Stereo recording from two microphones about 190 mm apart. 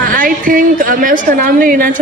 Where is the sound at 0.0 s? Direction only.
45° right (ahead or behind).